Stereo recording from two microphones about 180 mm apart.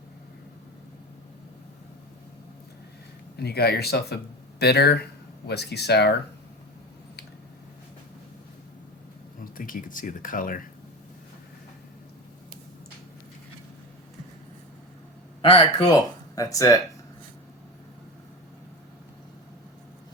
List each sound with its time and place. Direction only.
3.3 s speech: 65° left (ahead or behind)
9.4 s speech: 50° left (ahead or behind)
15.4 s speech: 20° left (ahead or behind)